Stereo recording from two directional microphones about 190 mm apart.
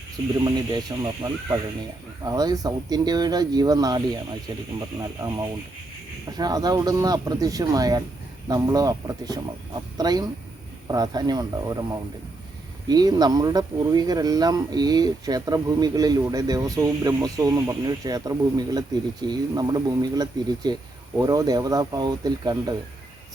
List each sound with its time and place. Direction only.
0.4 s speech: 20° right (ahead or behind)